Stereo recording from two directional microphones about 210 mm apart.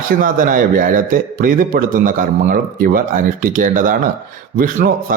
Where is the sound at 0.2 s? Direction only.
40° right (ahead or behind).